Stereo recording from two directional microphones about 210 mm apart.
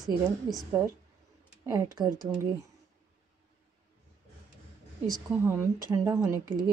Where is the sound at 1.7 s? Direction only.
15° right (ahead or behind).